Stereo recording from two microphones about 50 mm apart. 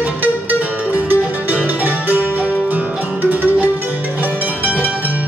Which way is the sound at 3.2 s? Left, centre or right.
Right.